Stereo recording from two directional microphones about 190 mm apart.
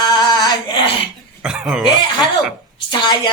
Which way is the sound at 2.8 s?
25° left (ahead or behind).